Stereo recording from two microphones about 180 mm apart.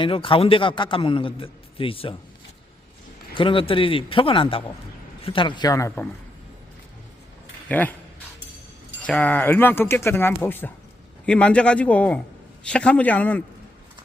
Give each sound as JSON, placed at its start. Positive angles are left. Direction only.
{"t": 0.0, "sound": "a man's voice", "side_deg": 30}
{"t": 3.3, "sound": "a man's voice", "side_deg": 30}
{"t": 7.7, "sound": "speech", "side_deg": 10}
{"t": 9.0, "sound": "speech", "side_deg": 5}